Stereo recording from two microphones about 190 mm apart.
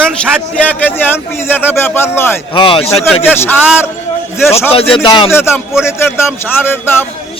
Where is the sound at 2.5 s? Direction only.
25° left (ahead or behind).